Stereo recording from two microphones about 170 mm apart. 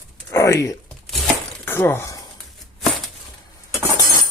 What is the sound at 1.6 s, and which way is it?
Speech, 10° left (ahead or behind).